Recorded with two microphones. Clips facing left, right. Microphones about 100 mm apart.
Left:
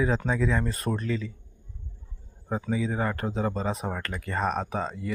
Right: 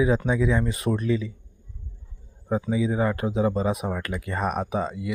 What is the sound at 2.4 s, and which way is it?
Speech, 10° right (ahead or behind).